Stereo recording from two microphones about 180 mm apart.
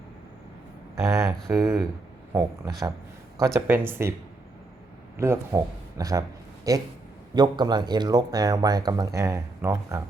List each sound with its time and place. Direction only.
0.9 s speech: 15° right (ahead or behind)
3.3 s speech: 15° right (ahead or behind)
5.1 s speech: 15° right (ahead or behind)